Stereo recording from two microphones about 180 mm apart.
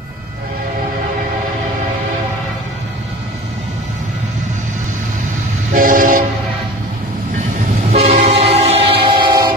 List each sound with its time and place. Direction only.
5.7 s train: 50° right (ahead or behind)
7.9 s train: 35° right (ahead or behind)